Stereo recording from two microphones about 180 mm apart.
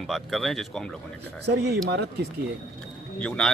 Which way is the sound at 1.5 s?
70° right (ahead or behind).